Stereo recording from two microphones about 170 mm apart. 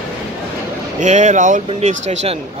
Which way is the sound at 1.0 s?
45° right (ahead or behind).